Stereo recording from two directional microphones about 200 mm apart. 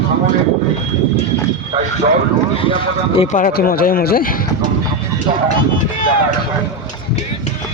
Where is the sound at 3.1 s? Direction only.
30° left (ahead or behind).